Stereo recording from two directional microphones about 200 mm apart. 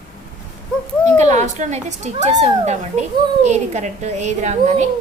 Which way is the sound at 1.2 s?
35° right (ahead or behind).